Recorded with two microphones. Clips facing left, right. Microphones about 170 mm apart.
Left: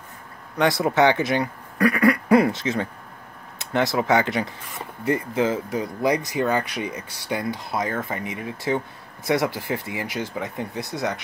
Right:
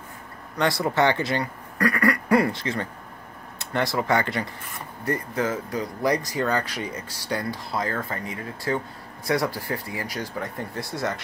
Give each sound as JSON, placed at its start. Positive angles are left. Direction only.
{"t": 0.6, "sound": "speech", "side_deg": 20}